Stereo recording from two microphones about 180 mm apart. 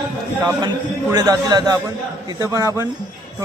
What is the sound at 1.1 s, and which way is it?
A man's voice, 20° right (ahead or behind).